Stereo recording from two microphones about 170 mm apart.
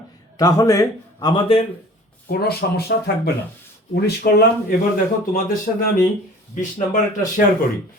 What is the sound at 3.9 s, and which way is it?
Speech, 70° left (ahead or behind).